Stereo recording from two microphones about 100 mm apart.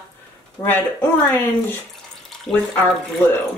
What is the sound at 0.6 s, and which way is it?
Speech, 20° left (ahead or behind).